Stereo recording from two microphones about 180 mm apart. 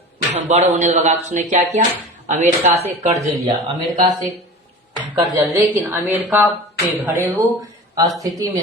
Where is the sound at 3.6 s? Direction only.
Centre (ahead or behind).